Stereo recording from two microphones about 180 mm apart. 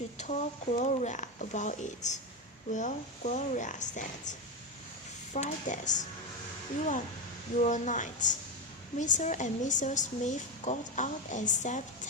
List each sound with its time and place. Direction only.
0.2 s a woman's voice: 40° left (ahead or behind)
7.6 s a woman's voice: 45° left (ahead or behind)